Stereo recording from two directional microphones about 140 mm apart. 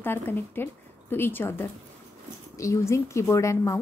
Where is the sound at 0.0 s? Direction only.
15° left (ahead or behind).